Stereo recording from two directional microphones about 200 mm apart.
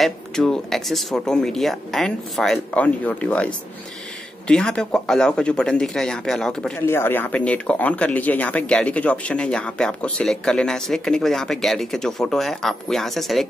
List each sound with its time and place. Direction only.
0.0 s speech: centre (ahead or behind)